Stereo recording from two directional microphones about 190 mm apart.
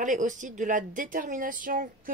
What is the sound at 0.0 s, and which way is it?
A woman's voice, 40° right (ahead or behind).